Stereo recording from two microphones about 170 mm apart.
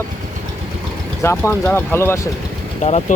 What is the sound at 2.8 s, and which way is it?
Speech, 40° left (ahead or behind).